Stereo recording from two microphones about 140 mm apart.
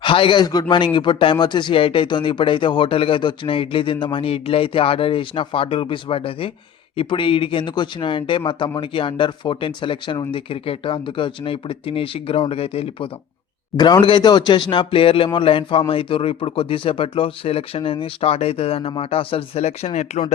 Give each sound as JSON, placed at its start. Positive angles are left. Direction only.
{"t": 0.0, "sound": "speech", "side_deg": 35}
{"t": 13.7, "sound": "speech", "side_deg": 30}